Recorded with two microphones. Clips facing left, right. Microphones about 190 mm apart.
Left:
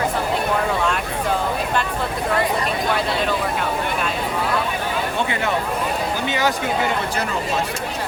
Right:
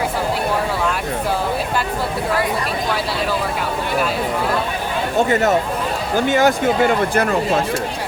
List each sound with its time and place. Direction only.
5.1 s speech: 45° right (ahead or behind)